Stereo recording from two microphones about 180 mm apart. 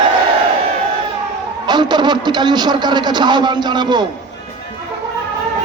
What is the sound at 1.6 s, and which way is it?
A man's voice, 25° right (ahead or behind).